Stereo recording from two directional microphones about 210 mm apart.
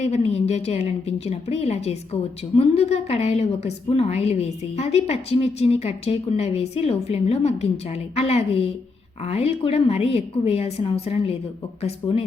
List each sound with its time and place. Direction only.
0.0 s a woman's voice: 30° left (ahead or behind)